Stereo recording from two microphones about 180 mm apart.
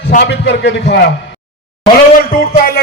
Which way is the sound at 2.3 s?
55° left (ahead or behind).